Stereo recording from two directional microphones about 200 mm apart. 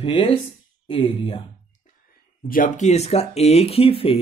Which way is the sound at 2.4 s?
45° left (ahead or behind).